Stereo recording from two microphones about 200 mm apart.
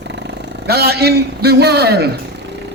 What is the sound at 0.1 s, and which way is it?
A man's voice, 60° right (ahead or behind).